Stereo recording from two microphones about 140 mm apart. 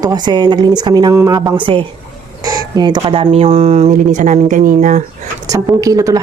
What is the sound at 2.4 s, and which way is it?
Speech, 25° right (ahead or behind).